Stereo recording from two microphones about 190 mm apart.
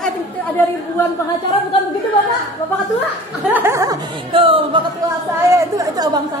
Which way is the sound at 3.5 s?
15° right (ahead or behind).